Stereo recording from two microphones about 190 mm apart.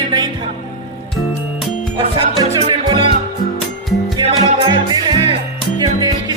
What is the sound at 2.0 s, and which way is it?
Music, 30° right (ahead or behind).